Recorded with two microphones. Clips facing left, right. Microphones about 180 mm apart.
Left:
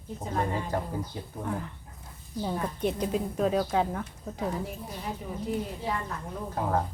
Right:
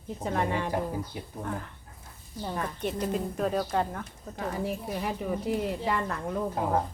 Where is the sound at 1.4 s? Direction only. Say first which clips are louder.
Left 2 dB; 5° left (ahead or behind).